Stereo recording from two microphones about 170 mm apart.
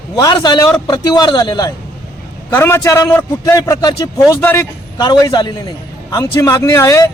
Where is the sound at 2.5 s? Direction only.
15° left (ahead or behind).